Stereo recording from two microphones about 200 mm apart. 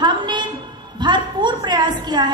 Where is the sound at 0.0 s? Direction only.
20° right (ahead or behind).